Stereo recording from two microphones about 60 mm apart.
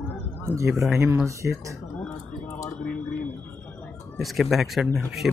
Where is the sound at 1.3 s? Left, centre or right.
Right.